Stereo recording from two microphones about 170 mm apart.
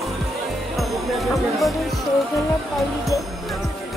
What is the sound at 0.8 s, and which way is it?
Music, centre (ahead or behind).